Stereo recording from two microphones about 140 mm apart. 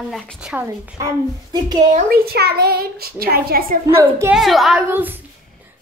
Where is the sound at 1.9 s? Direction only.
90° right.